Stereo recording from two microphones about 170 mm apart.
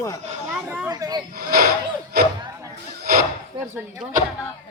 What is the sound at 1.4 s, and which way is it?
Speech, 60° right (ahead or behind).